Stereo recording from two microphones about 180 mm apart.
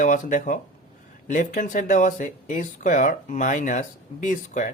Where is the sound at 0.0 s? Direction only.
45° left (ahead or behind).